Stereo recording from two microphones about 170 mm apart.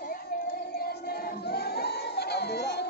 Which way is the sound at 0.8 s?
65° left (ahead or behind).